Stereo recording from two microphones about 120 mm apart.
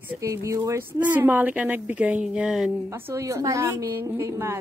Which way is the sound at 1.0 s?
15° right (ahead or behind).